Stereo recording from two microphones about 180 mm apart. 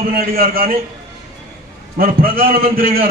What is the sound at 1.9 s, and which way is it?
A man's voice, 55° right (ahead or behind).